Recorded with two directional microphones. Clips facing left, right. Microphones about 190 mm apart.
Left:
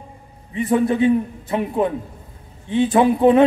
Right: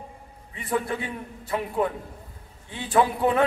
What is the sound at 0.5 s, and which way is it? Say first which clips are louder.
A man's voice: left 10 dB; 20° left (ahead or behind).